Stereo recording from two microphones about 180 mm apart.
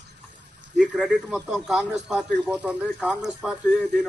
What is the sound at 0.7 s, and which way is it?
Speech, 5° right (ahead or behind).